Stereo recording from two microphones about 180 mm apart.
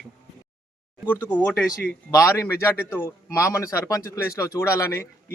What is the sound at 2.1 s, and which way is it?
Speech, 15° left (ahead or behind).